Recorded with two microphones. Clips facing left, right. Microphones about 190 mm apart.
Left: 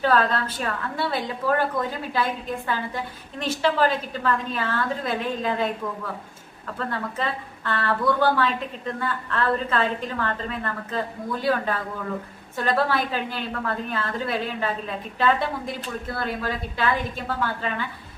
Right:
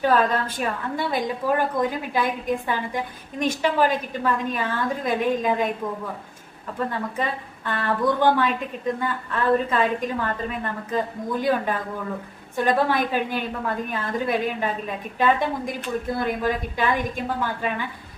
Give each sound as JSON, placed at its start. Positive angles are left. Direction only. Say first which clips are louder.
{"t": 0.0, "sound": "a woman's voice", "louder": "right 1 dB", "side_deg": -15}
{"t": 6.7, "sound": "a woman's voice", "louder": "right 2 dB", "side_deg": -15}